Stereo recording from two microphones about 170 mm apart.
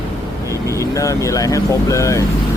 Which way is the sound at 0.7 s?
20° left (ahead or behind).